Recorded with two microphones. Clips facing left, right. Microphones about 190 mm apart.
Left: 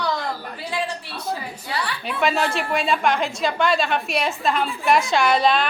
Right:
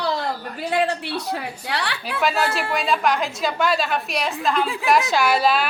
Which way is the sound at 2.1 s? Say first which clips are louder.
Even; centre (ahead or behind).